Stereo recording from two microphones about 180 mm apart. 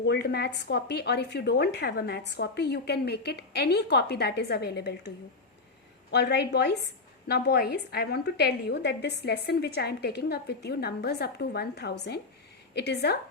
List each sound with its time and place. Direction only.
0.0 s a woman's voice: 65° left (ahead or behind)